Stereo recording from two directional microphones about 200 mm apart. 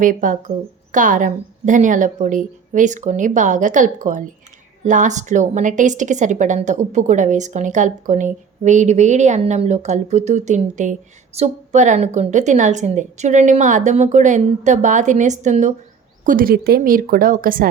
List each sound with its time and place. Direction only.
0.0 s a woman's voice: 40° right (ahead or behind)